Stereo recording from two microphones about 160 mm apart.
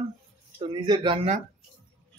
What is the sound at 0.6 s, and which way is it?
Speech, 30° right (ahead or behind).